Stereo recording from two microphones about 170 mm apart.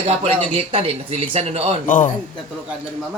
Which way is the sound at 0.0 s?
35° right (ahead or behind).